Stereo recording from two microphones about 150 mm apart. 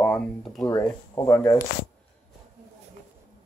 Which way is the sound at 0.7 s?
20° left (ahead or behind).